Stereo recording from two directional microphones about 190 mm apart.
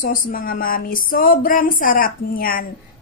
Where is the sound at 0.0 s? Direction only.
50° left (ahead or behind).